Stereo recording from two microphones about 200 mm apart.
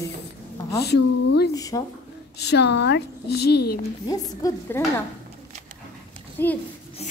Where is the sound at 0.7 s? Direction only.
55° left (ahead or behind).